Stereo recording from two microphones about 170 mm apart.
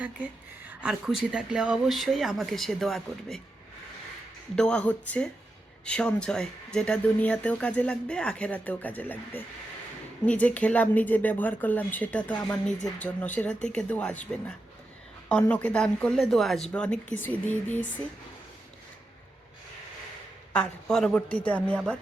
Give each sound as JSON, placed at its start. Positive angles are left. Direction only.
{"t": 0.7, "sound": "speech", "side_deg": -5}
{"t": 4.5, "sound": "speech", "side_deg": 5}
{"t": 20.5, "sound": "speech", "side_deg": 5}